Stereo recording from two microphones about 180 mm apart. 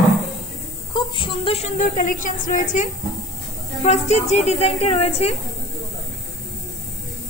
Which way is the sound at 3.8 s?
40° left (ahead or behind).